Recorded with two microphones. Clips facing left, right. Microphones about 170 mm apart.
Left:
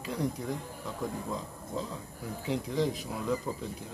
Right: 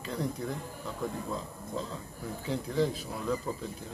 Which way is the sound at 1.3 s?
15° left (ahead or behind).